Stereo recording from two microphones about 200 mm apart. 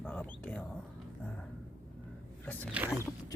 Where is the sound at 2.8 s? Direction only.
10° right (ahead or behind).